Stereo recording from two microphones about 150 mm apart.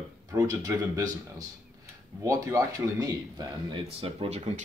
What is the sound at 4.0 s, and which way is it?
Speech, 40° right (ahead or behind).